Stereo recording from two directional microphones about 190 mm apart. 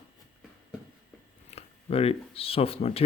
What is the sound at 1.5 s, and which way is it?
Speech, 30° left (ahead or behind).